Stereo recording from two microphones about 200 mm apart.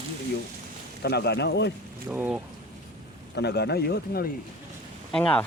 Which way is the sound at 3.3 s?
55° left (ahead or behind).